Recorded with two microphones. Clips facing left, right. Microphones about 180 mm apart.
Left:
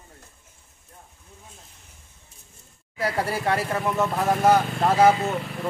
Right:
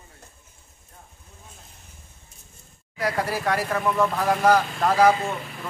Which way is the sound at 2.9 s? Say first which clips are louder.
Even; 30° left (ahead or behind).